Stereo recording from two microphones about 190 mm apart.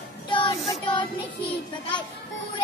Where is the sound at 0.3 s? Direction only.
25° left (ahead or behind).